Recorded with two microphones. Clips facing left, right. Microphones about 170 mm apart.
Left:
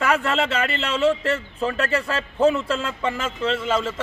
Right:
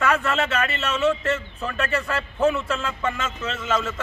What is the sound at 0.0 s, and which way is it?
Speech, 30° left (ahead or behind).